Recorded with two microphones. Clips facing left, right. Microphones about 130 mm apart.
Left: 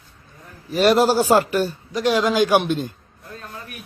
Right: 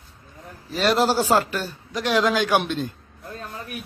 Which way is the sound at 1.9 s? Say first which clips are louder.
Even; centre (ahead or behind).